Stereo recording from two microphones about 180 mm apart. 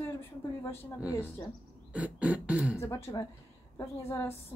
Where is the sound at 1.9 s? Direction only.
10° right (ahead or behind).